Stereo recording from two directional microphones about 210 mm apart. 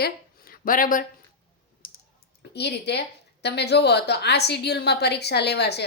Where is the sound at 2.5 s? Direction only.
50° left (ahead or behind).